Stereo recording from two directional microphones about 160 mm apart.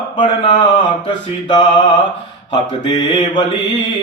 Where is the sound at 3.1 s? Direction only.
30° left (ahead or behind).